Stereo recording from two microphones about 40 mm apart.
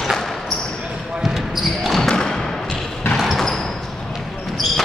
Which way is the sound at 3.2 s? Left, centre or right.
Centre.